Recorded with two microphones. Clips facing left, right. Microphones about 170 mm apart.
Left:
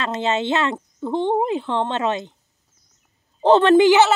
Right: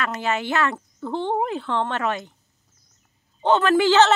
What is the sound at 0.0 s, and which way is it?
Speech, 25° left (ahead or behind).